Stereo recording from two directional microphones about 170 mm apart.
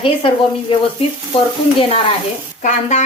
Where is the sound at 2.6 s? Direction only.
40° left (ahead or behind).